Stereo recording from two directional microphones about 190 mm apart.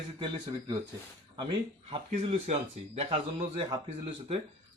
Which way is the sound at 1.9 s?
30° right (ahead or behind).